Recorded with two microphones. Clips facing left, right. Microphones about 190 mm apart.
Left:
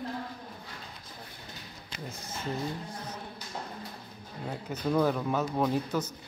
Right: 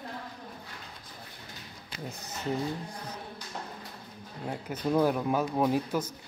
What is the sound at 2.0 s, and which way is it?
Speech, 20° right (ahead or behind).